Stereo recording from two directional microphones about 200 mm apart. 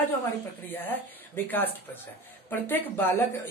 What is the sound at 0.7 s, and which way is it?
Speech, 10° left (ahead or behind).